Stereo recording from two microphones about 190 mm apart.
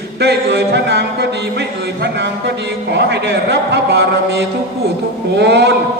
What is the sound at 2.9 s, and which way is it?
A man's voice, 60° right (ahead or behind).